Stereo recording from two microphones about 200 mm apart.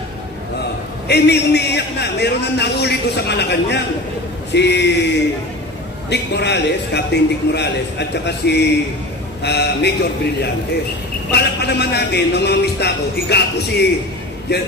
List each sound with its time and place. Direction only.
1.0 s a man's voice: 55° left (ahead or behind)
11.3 s a man's voice: 55° left (ahead or behind)